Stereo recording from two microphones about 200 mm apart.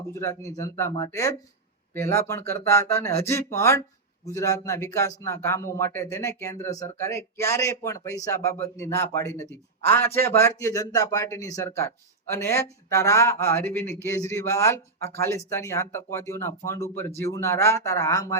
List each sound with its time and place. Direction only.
0.1 s speech: 15° left (ahead or behind)